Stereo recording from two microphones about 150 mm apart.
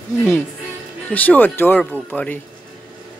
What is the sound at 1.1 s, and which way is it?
Speech, 10° left (ahead or behind).